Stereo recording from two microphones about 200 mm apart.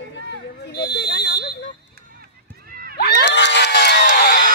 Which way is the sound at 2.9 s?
55° left (ahead or behind).